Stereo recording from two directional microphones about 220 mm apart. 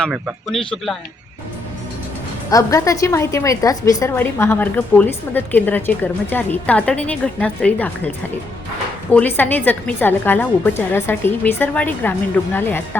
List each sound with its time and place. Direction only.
0.0 s a man's voice: centre (ahead or behind)
2.5 s a woman's voice: 15° left (ahead or behind)
9.1 s a woman's voice: 10° left (ahead or behind)